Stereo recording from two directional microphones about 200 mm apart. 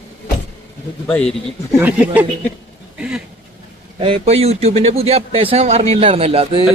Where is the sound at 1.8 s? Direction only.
5° right (ahead or behind).